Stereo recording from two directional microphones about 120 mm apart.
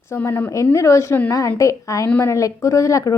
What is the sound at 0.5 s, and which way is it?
Speech, 25° left (ahead or behind).